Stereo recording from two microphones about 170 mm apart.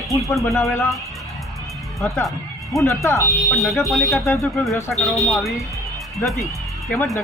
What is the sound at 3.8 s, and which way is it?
Speech, centre (ahead or behind).